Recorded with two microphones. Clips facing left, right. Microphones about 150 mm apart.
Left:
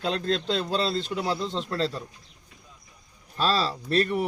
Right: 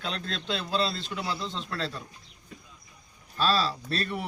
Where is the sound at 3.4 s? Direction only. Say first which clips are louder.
Left 1 dB; 35° left (ahead or behind).